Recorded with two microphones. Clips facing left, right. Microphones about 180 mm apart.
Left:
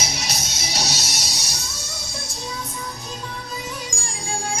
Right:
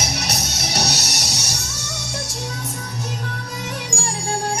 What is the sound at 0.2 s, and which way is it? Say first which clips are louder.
Music: right 4 dB; 65° right (ahead or behind).